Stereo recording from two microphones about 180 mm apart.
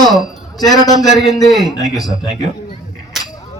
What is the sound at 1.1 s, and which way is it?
Speech, centre (ahead or behind).